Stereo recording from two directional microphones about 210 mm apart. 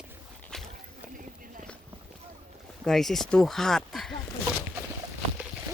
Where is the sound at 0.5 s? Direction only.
5° left (ahead or behind).